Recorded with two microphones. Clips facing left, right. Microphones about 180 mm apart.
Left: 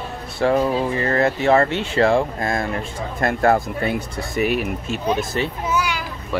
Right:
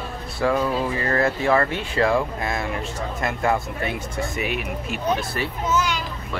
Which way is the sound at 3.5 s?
40° left (ahead or behind).